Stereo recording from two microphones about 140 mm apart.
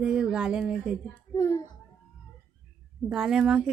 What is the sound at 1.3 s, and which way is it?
Speech, 20° left (ahead or behind).